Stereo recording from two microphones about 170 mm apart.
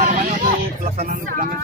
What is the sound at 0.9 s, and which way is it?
Music, 55° right (ahead or behind).